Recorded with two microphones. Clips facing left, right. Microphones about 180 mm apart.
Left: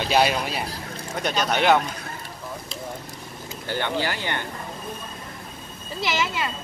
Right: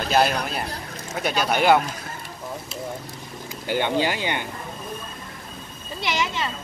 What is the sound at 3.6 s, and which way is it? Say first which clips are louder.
Speech: right 4 dB; 15° right (ahead or behind).